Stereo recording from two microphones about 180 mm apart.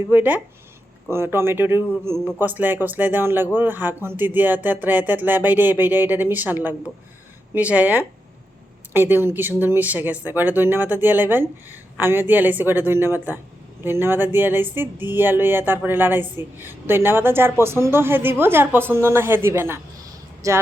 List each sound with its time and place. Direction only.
0.1 s speech: 10° right (ahead or behind)